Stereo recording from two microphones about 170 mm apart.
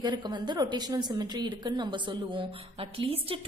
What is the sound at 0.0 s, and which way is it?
A woman's voice, 25° right (ahead or behind).